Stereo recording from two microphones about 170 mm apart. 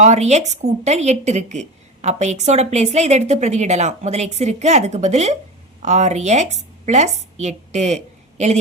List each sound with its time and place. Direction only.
0.0 s a woman's voice: 40° right (ahead or behind)